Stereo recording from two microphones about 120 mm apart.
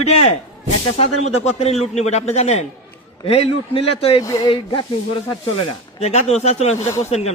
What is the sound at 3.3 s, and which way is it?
Speech, 55° left (ahead or behind).